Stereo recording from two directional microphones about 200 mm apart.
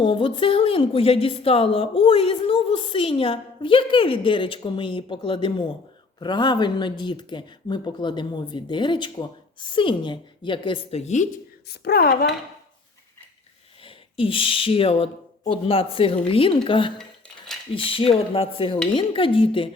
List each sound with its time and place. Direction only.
0.0 s a woman's voice: 25° left (ahead or behind)
11.7 s a woman's voice: 50° left (ahead or behind)
13.8 s a woman's voice: 25° left (ahead or behind)
17.0 s cutlery: centre (ahead or behind)
17.7 s a woman's voice: 25° left (ahead or behind)